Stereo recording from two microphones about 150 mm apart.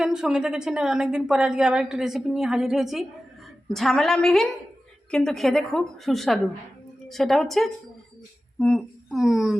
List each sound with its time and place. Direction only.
0.0 s a woman's voice: 5° right (ahead or behind)